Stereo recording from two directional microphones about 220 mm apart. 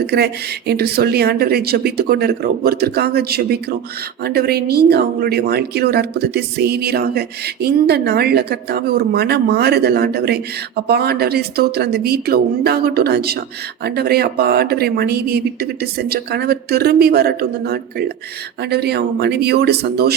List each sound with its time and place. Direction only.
0.7 s speech: 45° right (ahead or behind)